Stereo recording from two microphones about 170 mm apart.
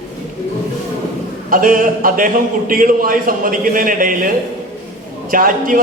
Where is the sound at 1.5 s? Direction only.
55° right (ahead or behind).